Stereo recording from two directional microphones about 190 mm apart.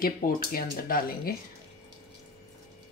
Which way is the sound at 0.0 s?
50° left (ahead or behind).